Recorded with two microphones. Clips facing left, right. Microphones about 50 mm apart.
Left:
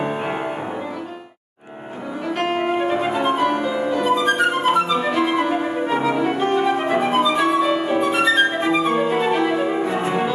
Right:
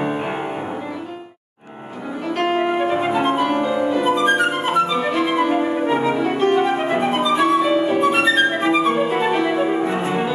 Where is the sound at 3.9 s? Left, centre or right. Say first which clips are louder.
Even; right.